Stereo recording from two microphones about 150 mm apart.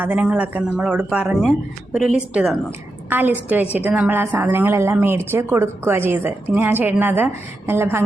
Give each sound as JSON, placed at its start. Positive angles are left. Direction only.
{"t": 0.0, "sound": "a woman's voice", "side_deg": -10}